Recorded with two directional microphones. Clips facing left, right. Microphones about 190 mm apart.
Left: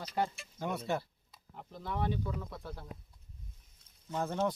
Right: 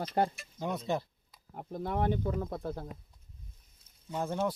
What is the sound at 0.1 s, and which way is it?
Speech, 45° right (ahead or behind).